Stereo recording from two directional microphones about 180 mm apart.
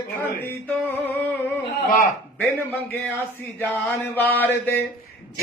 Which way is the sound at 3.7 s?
10° left (ahead or behind).